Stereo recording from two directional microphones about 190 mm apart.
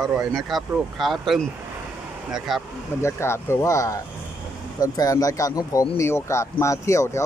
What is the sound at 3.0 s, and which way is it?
Speech, 15° left (ahead or behind).